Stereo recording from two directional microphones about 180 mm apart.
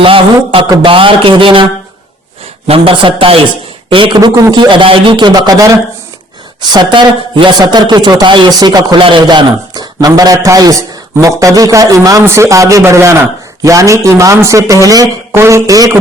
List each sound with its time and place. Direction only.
0.0 s a man's voice: 30° right (ahead or behind)
2.6 s a man's voice: 30° right (ahead or behind)